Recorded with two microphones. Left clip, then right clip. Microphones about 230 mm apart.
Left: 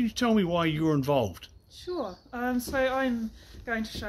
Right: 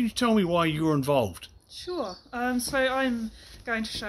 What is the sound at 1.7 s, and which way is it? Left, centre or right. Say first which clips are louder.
Speech: right 1 dB; centre.